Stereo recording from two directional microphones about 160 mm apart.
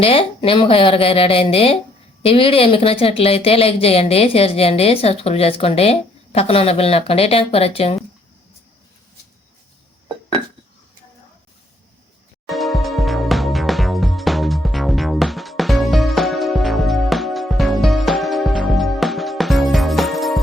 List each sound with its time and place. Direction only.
0.0 s a woman's voice: 35° left (ahead or behind)
12.5 s music: centre (ahead or behind)